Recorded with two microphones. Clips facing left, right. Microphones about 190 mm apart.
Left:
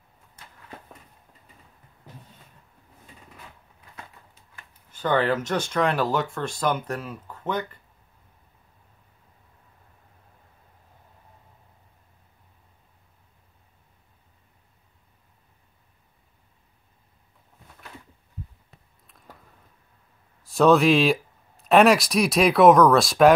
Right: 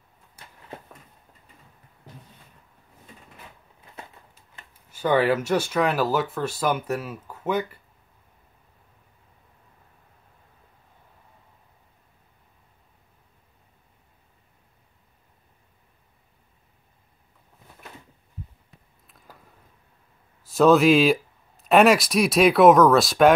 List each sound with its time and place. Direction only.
4.9 s speech: 10° right (ahead or behind)
19.0 s a sound: centre (ahead or behind)
20.4 s speech: centre (ahead or behind)